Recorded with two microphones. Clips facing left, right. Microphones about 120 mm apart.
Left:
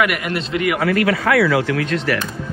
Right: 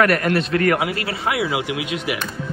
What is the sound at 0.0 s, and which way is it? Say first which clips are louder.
Speech: right 3 dB; 10° left (ahead or behind).